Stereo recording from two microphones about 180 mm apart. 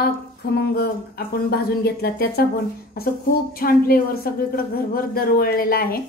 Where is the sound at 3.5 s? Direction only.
55° left (ahead or behind).